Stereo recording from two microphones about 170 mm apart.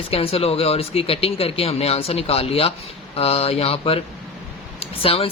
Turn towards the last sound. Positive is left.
turn(degrees=35)  # may be behind; listen again after turning